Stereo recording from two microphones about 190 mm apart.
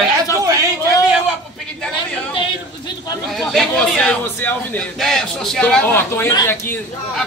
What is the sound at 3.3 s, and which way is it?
A man's voice, centre (ahead or behind).